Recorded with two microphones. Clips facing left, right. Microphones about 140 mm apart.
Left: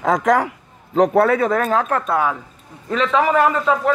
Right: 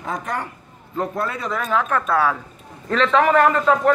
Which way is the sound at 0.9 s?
75° left (ahead or behind).